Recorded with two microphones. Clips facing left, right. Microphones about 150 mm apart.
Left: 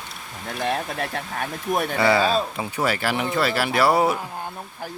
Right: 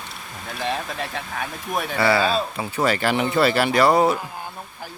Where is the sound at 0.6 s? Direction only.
50° left (ahead or behind).